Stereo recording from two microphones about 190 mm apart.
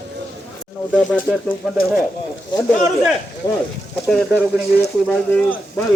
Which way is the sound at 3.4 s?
20° left (ahead or behind).